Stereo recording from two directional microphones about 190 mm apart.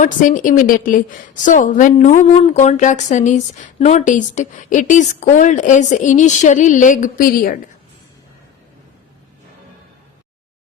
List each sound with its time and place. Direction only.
0.0 s a woman's voice: 45° left (ahead or behind)